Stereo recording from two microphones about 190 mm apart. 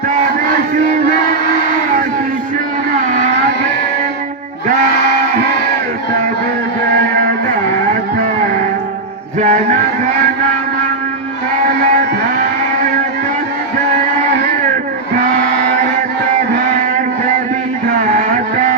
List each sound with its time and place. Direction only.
9.4 s music: 40° right (ahead or behind)